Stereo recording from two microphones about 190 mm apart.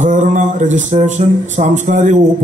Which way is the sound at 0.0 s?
40° right (ahead or behind).